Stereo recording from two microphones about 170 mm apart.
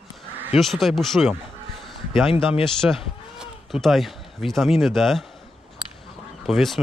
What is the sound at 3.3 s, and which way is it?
A man's voice, centre (ahead or behind).